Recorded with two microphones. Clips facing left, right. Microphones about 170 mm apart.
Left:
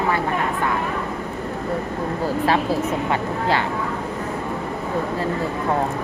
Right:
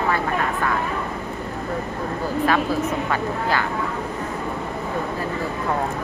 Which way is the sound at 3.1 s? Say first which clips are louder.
Left 2 dB; 25° left (ahead or behind).